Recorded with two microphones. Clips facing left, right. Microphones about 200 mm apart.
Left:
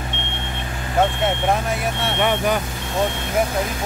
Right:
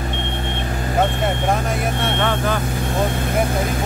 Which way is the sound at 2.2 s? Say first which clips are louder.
Left 3 dB; 15° left (ahead or behind).